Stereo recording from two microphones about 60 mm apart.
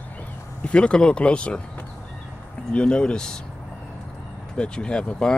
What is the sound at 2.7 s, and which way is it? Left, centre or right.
Speech, centre.